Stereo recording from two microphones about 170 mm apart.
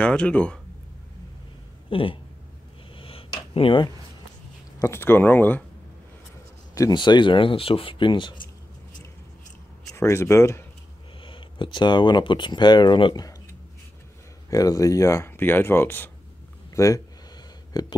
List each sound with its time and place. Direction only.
0.0 s speech: 5° left (ahead or behind)
1.9 s speech: 30° left (ahead or behind)
3.0 s a sound: 35° left (ahead or behind)
4.7 s speech: 15° left (ahead or behind)
6.7 s speech: 20° left (ahead or behind)
9.8 s speech: 15° left (ahead or behind)
11.2 s speech: 30° left (ahead or behind)
14.5 s speech: 20° left (ahead or behind)